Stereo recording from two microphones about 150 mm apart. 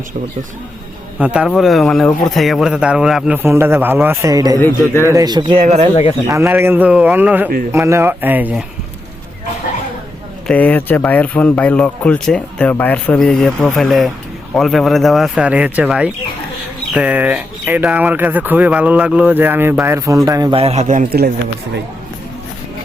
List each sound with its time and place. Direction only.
1.2 s speech: 5° right (ahead or behind); by 5.6 s 35° right (ahead or behind)
5.6 s speech: 45° right (ahead or behind)
6.2 s speech: 20° right (ahead or behind)
10.4 s speech: 10° left (ahead or behind); by 20.5 s 20° right (ahead or behind)
20.5 s a man's voice: 40° right (ahead or behind)
20.8 s a man's voice: 55° right (ahead or behind)